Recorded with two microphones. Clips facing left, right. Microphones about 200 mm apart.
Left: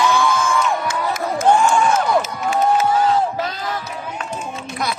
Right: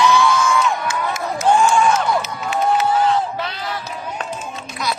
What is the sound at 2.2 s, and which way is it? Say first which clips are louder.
Cheering: left 3 dB; 45° left (ahead or behind).